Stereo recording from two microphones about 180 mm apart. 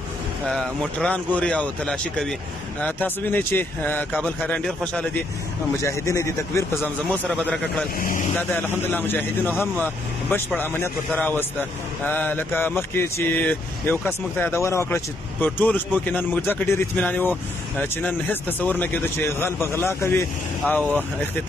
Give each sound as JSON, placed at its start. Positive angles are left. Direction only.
{"t": 0.5, "sound": "speech", "side_deg": 5}
{"t": 7.1, "sound": "a man's voice", "side_deg": 0}
{"t": 8.0, "sound": "speech", "side_deg": 45}
{"t": 8.4, "sound": "speech", "side_deg": 10}